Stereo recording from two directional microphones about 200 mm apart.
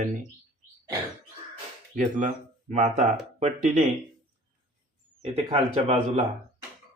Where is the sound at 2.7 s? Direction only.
35° right (ahead or behind).